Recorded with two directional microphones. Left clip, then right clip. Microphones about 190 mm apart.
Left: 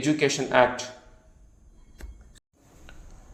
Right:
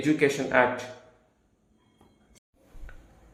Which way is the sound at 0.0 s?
30° left (ahead or behind).